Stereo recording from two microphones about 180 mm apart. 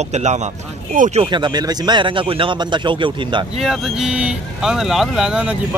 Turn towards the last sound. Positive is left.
turn(degrees=-5)  # may be behind; listen again after turning